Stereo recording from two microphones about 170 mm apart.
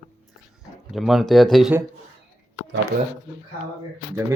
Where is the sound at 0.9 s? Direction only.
Centre (ahead or behind).